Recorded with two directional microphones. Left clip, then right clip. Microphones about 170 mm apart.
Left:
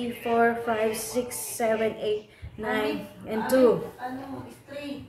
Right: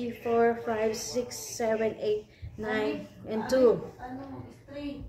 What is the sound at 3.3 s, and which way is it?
Speech, 15° left (ahead or behind).